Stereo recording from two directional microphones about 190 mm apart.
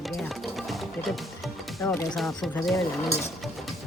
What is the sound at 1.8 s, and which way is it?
Speech, 20° left (ahead or behind).